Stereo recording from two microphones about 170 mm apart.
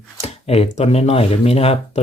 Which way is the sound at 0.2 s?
35° left (ahead or behind).